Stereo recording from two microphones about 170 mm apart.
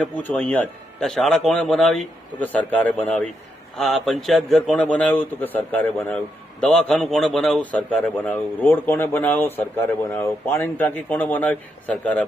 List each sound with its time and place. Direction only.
0.0 s a man's voice: 10° left (ahead or behind)